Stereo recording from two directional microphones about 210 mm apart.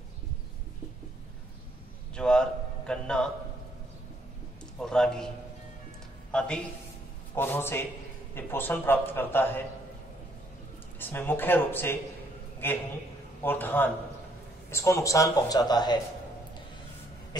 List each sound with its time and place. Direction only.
2.1 s a sound: 5° left (ahead or behind)
2.9 s a man's voice: 5° left (ahead or behind)
4.7 s a man's voice: 5° left (ahead or behind)
6.3 s a man's voice: 5° left (ahead or behind)
11.0 s a man's voice: 10° left (ahead or behind)